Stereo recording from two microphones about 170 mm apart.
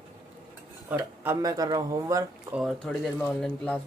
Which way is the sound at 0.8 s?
10° right (ahead or behind).